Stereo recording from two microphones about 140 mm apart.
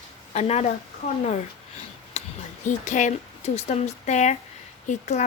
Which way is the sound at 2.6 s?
60° left (ahead or behind).